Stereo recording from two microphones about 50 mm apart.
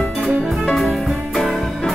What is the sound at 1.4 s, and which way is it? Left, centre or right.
Music, centre.